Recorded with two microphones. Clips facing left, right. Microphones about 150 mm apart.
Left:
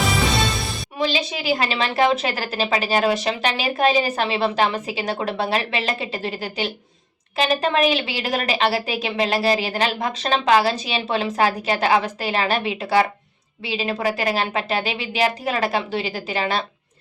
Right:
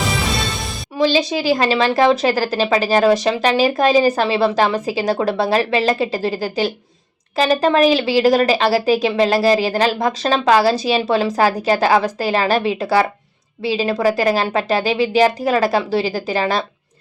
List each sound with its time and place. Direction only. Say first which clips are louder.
0.9 s speech: right 8 dB; 35° right (ahead or behind)